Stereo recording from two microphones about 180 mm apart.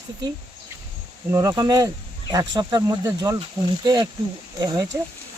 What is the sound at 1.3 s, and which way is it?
Speech, 20° right (ahead or behind).